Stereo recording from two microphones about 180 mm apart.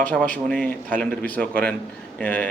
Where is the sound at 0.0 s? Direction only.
5° left (ahead or behind).